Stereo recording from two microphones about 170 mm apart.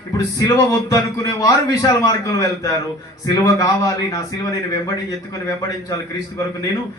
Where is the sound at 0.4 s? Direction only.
20° left (ahead or behind).